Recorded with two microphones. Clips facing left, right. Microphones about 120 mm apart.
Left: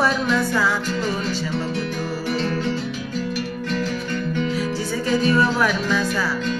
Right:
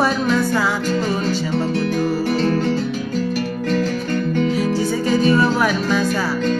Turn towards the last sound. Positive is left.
turn(degrees=-25)  # may be behind; listen again after turning